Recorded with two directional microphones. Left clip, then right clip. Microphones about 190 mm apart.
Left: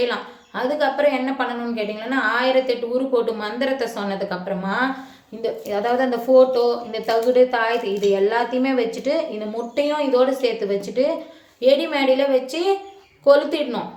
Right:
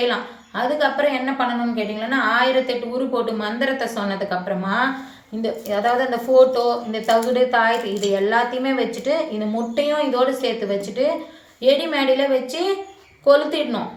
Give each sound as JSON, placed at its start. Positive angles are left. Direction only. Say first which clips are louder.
{"t": 0.0, "sound": "a woman's voice", "louder": "right 1 dB", "side_deg": 50}